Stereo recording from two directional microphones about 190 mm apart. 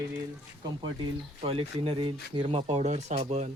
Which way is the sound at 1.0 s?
30° right (ahead or behind).